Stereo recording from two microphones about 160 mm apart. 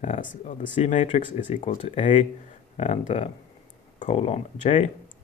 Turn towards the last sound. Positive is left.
turn(degrees=45)  # may be behind; listen again after turning